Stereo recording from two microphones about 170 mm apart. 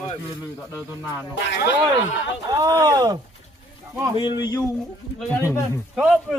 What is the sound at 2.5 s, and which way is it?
Speech, 20° right (ahead or behind).